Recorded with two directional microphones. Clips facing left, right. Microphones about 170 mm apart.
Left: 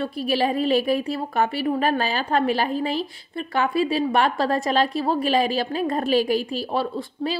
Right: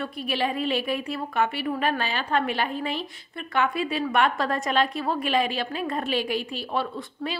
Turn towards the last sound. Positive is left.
turn(degrees=35)  # may be behind; listen again after turning